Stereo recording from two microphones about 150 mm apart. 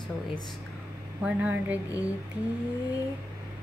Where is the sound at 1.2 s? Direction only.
5° right (ahead or behind).